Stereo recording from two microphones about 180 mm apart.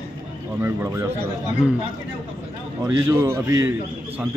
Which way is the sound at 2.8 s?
15° right (ahead or behind).